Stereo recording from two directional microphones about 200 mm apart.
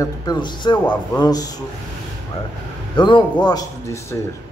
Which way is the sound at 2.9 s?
25° left (ahead or behind).